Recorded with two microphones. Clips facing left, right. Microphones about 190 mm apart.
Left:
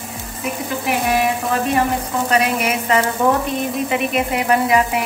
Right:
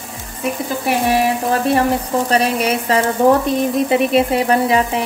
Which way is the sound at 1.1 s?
30° right (ahead or behind).